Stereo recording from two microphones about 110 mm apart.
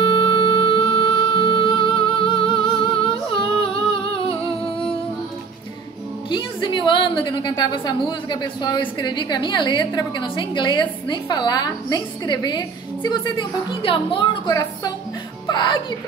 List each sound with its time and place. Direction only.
0.0 s music: 50° left (ahead or behind)
3.6 s humming: 55° left (ahead or behind)
4.6 s music: 60° left (ahead or behind)
6.3 s a woman's voice: 45° left (ahead or behind)
14.5 s speech: 35° left (ahead or behind)
15.4 s music: 45° left (ahead or behind)